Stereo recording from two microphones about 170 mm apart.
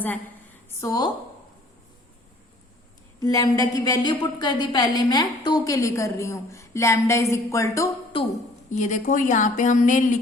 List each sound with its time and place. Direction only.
0.8 s a woman's voice: 20° left (ahead or behind)
3.2 s a woman's voice: 20° left (ahead or behind)
8.7 s a woman's voice: 45° left (ahead or behind)